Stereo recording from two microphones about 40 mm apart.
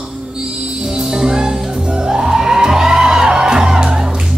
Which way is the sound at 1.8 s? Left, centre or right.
Right.